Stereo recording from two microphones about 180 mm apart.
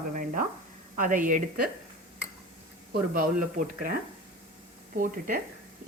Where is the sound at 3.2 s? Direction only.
50° right (ahead or behind).